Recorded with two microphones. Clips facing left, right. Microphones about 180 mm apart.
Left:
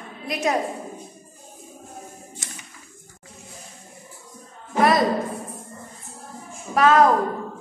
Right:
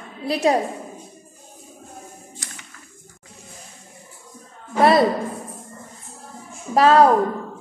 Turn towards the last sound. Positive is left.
turn(degrees=-30)  # may be behind; listen again after turning